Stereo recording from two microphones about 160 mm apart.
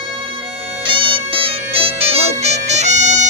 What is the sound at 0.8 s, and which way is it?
Music, 35° right (ahead or behind).